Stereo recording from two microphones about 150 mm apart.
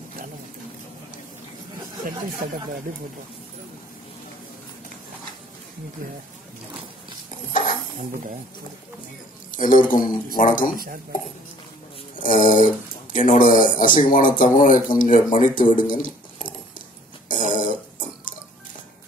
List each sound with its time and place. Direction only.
2.0 s speech: 70° right (ahead or behind)
9.5 s speech: 60° left (ahead or behind)
12.2 s speech: 60° left (ahead or behind)
17.3 s a sound: 60° left (ahead or behind)